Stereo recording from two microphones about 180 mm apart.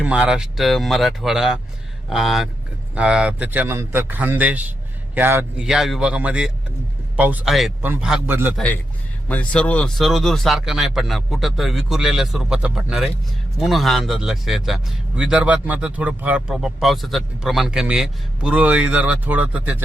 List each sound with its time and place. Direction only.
0.0 s a man's voice: 5° right (ahead or behind)
8.5 s a man's voice: 10° left (ahead or behind)